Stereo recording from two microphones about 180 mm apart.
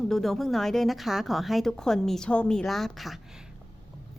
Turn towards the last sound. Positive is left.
turn(degrees=-5)  # may be behind; listen again after turning